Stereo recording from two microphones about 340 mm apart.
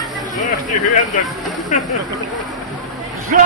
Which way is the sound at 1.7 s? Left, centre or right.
Left.